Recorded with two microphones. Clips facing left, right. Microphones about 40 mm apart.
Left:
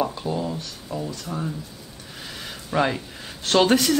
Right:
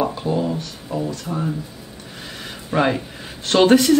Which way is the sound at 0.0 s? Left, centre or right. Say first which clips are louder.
Right 4 dB; centre.